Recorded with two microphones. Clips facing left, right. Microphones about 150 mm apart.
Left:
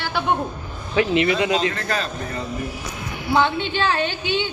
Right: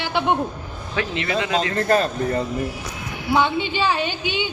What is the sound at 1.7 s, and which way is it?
Speech, 45° right (ahead or behind).